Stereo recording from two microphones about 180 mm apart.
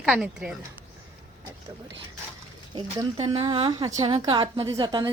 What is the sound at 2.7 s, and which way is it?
A woman's voice, 20° right (ahead or behind).